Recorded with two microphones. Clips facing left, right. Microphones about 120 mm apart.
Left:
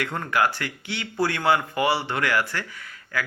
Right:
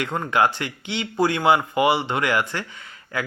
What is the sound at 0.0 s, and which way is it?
Speech, 20° right (ahead or behind).